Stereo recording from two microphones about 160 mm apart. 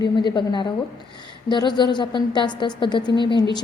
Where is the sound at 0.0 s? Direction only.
30° left (ahead or behind).